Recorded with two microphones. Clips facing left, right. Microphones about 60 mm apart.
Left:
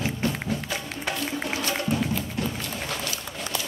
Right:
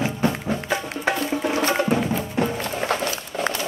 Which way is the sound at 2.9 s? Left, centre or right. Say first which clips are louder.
Right 7 dB; right.